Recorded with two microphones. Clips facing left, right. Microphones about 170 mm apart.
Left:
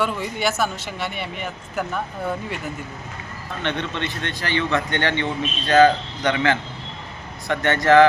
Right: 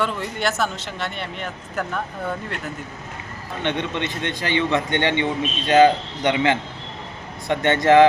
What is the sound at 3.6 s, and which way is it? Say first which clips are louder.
A man's voice: right 2 dB; 20° right (ahead or behind).